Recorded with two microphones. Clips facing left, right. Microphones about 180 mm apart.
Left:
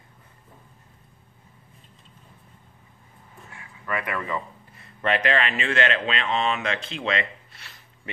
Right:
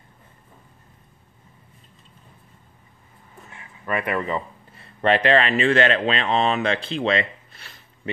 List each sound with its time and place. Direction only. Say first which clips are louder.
3.5 s speech: right 4 dB; 25° right (ahead or behind)